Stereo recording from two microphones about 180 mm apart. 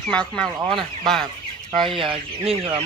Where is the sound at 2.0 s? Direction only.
30° right (ahead or behind).